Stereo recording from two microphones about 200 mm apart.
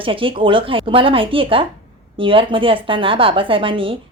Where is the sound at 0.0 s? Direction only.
25° right (ahead or behind).